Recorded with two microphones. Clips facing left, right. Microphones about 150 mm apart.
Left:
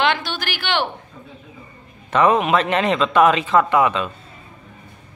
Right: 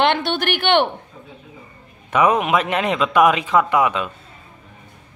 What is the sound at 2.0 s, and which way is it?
A man's voice, 10° right (ahead or behind).